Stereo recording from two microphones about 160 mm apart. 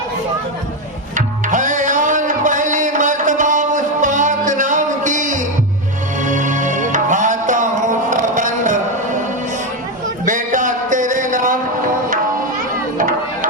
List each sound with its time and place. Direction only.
1.1 s music: 55° right (ahead or behind)
10.2 s music: 55° right (ahead or behind)
13.0 s chop: 55° right (ahead or behind)